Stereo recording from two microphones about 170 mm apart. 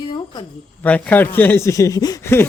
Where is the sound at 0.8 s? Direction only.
10° left (ahead or behind).